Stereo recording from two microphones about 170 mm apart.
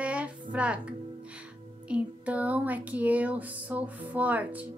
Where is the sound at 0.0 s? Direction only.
5° right (ahead or behind).